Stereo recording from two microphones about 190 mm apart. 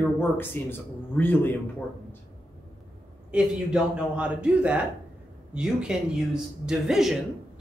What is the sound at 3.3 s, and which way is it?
A man's voice, 5° right (ahead or behind).